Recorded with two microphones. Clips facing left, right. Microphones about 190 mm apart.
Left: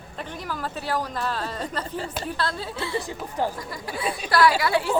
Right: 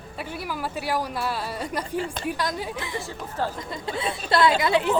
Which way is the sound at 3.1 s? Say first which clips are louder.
Left 2 dB; 15° left (ahead or behind).